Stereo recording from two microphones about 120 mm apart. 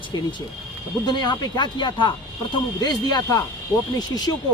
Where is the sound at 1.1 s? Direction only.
35° left (ahead or behind).